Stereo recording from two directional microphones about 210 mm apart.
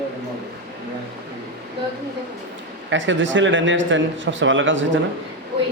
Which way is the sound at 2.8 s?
60° right (ahead or behind).